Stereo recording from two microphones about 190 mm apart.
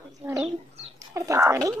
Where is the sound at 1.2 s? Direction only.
15° right (ahead or behind).